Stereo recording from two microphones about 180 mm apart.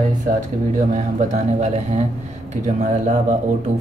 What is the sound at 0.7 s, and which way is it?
Speech, 40° right (ahead or behind).